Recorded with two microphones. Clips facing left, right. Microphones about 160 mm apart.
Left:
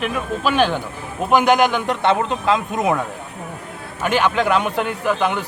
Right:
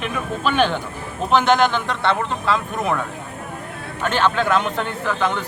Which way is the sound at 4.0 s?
10° left (ahead or behind).